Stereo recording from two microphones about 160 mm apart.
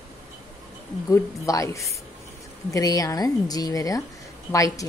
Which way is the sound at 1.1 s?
20° left (ahead or behind).